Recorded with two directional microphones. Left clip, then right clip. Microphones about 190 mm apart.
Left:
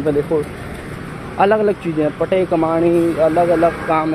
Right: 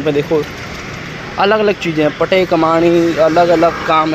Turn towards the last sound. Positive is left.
turn(degrees=-10)  # may be behind; listen again after turning